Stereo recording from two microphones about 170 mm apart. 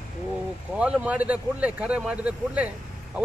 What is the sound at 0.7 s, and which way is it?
A man's voice, 5° right (ahead or behind).